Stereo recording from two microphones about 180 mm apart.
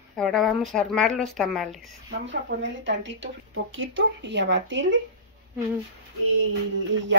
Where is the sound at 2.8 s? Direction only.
80° right.